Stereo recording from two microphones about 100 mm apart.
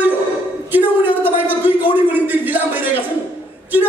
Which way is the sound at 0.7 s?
20° right (ahead or behind).